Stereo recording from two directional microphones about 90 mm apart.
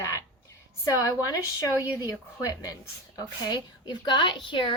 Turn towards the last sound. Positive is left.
turn(degrees=65)  # may be behind; listen again after turning